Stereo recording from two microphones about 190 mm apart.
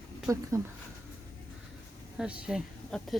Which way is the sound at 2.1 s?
5° right (ahead or behind).